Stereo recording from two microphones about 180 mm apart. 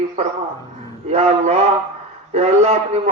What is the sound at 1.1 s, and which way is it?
A man's voice, 35° right (ahead or behind).